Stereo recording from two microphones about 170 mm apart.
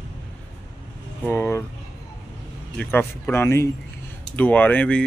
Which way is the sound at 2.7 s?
10° left (ahead or behind).